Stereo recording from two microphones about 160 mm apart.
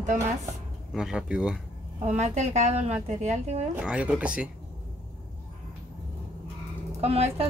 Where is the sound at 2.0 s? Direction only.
45° right (ahead or behind).